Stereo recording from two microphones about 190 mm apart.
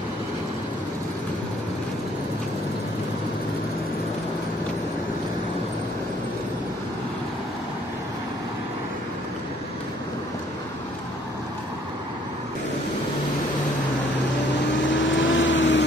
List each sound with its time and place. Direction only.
14.8 s vehicle: 75° left (ahead or behind)